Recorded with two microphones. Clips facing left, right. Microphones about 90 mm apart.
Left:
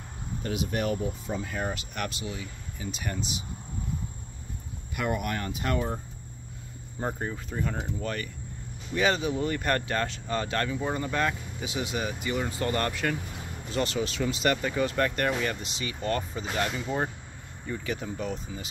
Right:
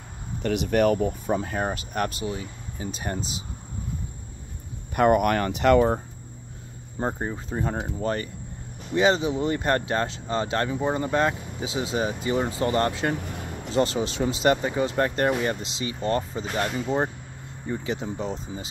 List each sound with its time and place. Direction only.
0.4 s speech: 65° right (ahead or behind)
1.4 s speech: 40° right (ahead or behind)
4.9 s speech: 55° right (ahead or behind); by 5.9 s 80° right
7.0 s speech: 25° right (ahead or behind)